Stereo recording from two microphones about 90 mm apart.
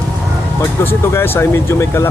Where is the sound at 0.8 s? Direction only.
30° left (ahead or behind).